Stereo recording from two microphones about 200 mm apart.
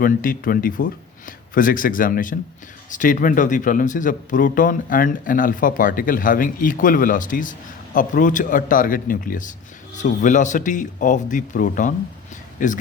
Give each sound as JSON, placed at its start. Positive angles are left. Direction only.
{"t": 0.0, "sound": "speech", "side_deg": 45}